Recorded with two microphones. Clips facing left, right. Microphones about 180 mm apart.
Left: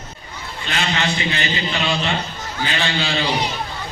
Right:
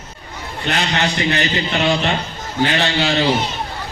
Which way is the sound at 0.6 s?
60° right (ahead or behind).